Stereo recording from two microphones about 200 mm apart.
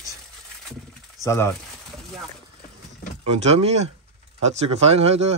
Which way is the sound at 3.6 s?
35° right (ahead or behind).